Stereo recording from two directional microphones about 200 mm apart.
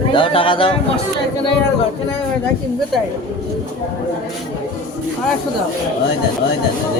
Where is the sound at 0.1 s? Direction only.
25° left (ahead or behind).